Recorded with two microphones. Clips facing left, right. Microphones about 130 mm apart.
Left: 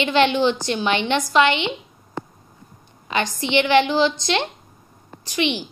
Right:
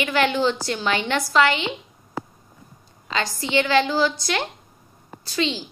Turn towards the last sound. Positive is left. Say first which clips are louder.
# left 2 dB
turn(degrees=20)  # may be behind; listen again after turning